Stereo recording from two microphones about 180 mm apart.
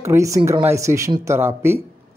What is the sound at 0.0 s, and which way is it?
Speech, 15° right (ahead or behind).